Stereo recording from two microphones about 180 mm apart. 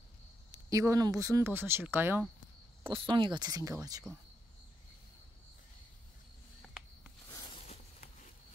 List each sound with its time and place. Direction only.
0.5 s speech: 15° right (ahead or behind)
2.9 s speech: 25° right (ahead or behind)
7.3 s a sound: 35° left (ahead or behind)